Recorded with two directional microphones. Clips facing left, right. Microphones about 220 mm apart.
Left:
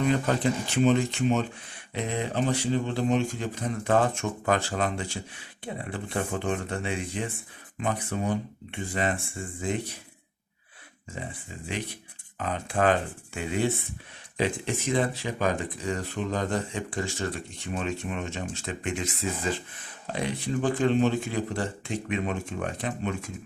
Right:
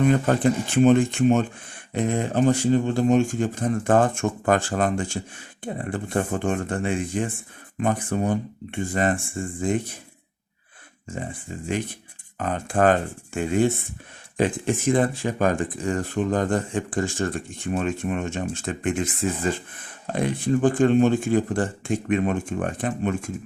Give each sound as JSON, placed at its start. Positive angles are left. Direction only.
{"t": 0.0, "sound": "speech", "side_deg": -50}
{"t": 12.4, "sound": "speech", "side_deg": -50}